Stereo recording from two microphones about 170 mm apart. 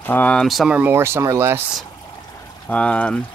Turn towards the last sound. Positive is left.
turn(degrees=5)  # may be behind; listen again after turning